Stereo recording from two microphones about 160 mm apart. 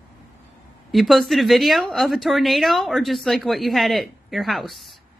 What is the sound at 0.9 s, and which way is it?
A woman's voice, centre (ahead or behind).